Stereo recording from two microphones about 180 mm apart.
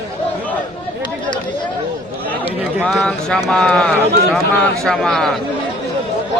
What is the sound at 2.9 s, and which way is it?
A man's voice, 5° left (ahead or behind).